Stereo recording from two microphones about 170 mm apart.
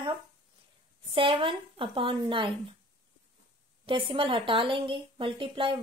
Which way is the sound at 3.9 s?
30° right (ahead or behind).